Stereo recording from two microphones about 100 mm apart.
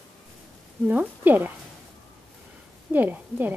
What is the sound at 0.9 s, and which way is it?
Speech, 20° right (ahead or behind).